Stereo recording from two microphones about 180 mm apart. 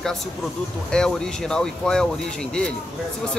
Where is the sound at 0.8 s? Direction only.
5° left (ahead or behind).